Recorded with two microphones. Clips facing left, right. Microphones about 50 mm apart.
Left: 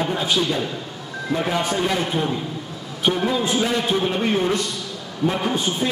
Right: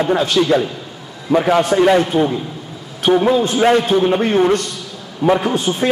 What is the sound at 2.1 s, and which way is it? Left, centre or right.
Speech, centre.